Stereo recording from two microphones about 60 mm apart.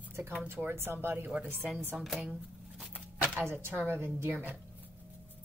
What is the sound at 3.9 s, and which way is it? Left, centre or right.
Speech, right.